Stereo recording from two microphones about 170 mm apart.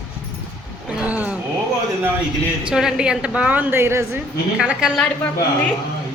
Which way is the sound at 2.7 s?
5° right (ahead or behind).